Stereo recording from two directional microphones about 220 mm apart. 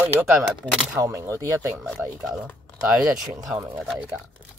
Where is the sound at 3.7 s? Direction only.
Centre (ahead or behind).